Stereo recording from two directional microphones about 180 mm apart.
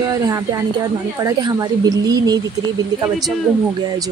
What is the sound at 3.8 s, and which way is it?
Speech, 20° right (ahead or behind).